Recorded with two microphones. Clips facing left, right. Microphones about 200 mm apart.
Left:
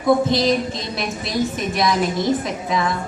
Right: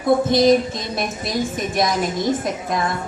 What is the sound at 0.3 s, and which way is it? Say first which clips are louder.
A woman's voice: right 4 dB; 50° right (ahead or behind).